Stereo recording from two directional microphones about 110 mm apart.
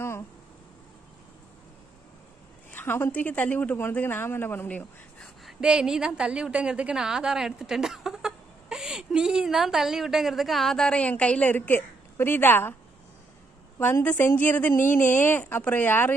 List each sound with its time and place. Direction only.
2.7 s a woman's voice: 20° left (ahead or behind)
5.4 s a woman's voice: 5° right (ahead or behind); by 12.7 s 20° left (ahead or behind)
13.7 s a woman's voice: 20° left (ahead or behind)